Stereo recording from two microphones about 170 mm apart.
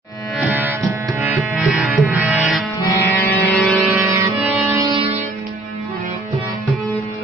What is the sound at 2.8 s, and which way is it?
Music, 15° left (ahead or behind).